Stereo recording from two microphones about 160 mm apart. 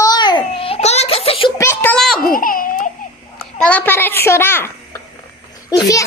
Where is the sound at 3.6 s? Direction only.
10° left (ahead or behind).